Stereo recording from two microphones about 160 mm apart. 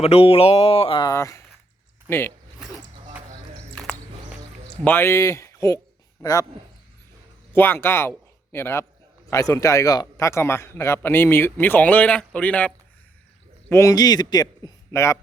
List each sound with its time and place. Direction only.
0.0 s mantra: 40° left (ahead or behind)
1.1 s a man's voice: 20° left (ahead or behind)
4.8 s a man's voice: 10° left (ahead or behind)
7.5 s a man's voice: 15° left (ahead or behind)